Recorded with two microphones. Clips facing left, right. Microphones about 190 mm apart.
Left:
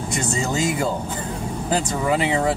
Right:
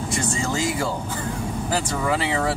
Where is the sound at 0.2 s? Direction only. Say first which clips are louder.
Left 3 dB; 20° left (ahead or behind).